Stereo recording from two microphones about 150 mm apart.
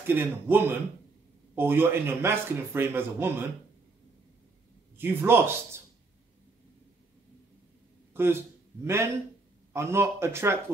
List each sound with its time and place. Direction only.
0.0 s a man's voice: 15° right (ahead or behind)
4.9 s a man's voice: 15° right (ahead or behind)
8.1 s a man's voice: 15° right (ahead or behind)